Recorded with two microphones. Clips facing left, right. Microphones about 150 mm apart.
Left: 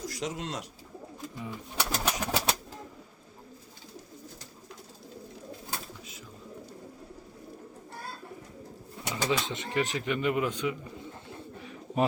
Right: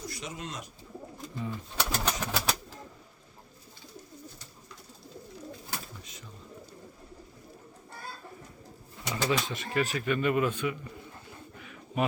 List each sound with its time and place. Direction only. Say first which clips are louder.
0.0 s speech: left 5 dB; 90° left
1.4 s bird: right 2 dB; 15° left (ahead or behind)
9.0 s bird: right 1 dB; 15° left (ahead or behind)
9.4 s speech: even; 20° left (ahead or behind)
11.5 s bird: left 2 dB; 30° left (ahead or behind)